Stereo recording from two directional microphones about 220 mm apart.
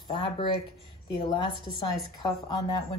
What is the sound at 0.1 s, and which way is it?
Speech, 25° left (ahead or behind).